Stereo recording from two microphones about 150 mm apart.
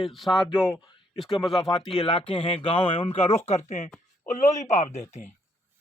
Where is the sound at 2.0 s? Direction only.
40° left (ahead or behind).